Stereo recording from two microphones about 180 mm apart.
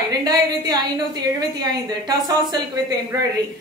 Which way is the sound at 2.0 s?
20° right (ahead or behind).